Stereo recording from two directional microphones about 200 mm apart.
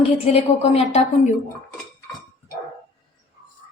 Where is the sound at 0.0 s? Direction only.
30° left (ahead or behind).